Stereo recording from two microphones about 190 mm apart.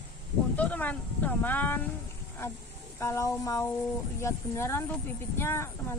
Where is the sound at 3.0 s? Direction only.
15° left (ahead or behind).